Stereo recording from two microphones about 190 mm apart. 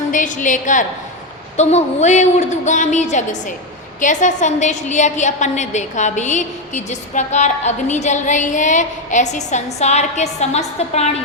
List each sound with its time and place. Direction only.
0.1 s a woman's voice: 40° left (ahead or behind)